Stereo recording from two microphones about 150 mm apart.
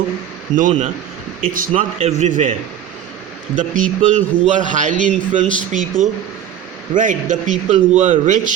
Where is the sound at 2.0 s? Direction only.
50° right (ahead or behind).